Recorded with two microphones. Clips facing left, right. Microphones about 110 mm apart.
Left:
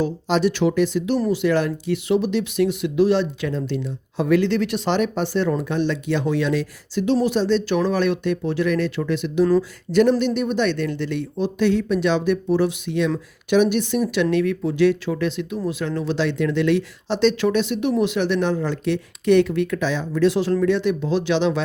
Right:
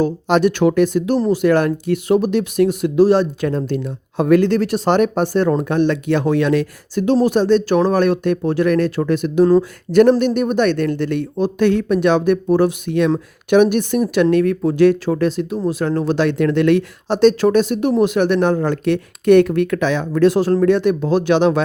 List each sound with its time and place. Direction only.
0.0 s speech: 55° right (ahead or behind)